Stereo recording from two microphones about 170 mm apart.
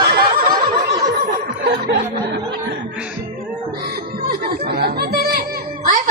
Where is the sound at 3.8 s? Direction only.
60° right (ahead or behind).